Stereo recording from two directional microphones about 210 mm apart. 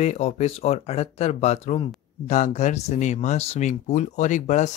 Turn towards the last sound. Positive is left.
turn(degrees=35)  # may be behind; listen again after turning